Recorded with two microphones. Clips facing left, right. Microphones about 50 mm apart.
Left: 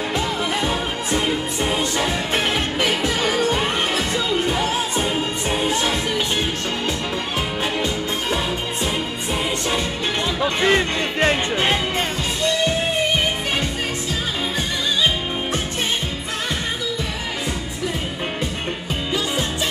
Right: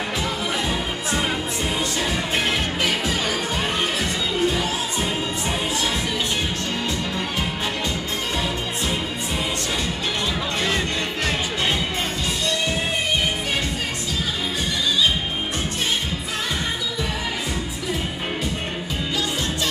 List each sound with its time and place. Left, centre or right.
1.6 s music: left
10.4 s music: left